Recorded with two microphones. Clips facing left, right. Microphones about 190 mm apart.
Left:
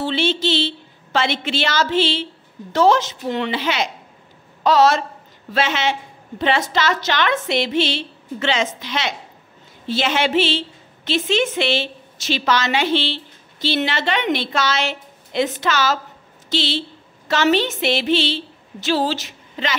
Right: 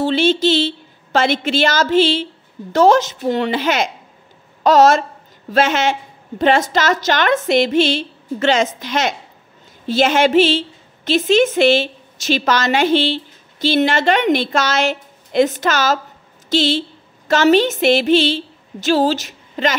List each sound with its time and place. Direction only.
0.0 s a woman's voice: 45° right (ahead or behind)